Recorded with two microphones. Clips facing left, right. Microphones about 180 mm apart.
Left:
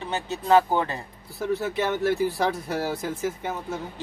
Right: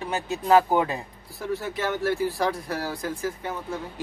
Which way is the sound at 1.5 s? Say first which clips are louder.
Left 1 dB; 20° left (ahead or behind).